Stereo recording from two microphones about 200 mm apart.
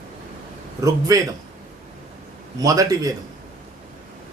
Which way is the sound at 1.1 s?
15° right (ahead or behind).